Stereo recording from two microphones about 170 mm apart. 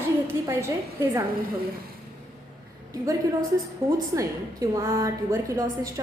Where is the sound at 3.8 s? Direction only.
30° right (ahead or behind).